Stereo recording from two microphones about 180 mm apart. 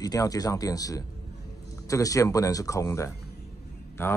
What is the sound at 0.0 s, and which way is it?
Speech, 20° left (ahead or behind).